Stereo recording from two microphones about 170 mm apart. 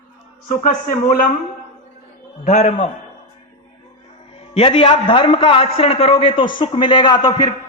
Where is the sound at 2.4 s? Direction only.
45° left (ahead or behind).